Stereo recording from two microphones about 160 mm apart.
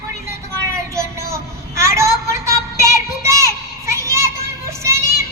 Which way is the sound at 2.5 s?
15° right (ahead or behind).